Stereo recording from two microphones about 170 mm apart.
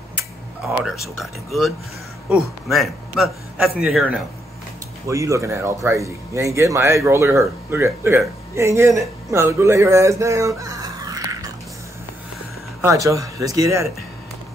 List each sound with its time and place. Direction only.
1.2 s a man's voice: centre (ahead or behind)
5.0 s a man's voice: 20° right (ahead or behind)
12.8 s speech: 20° right (ahead or behind)